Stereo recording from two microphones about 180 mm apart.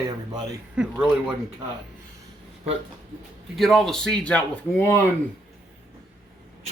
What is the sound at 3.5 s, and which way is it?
Speech, centre (ahead or behind).